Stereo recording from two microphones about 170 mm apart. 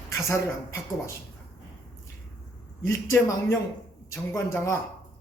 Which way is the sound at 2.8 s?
15° left (ahead or behind).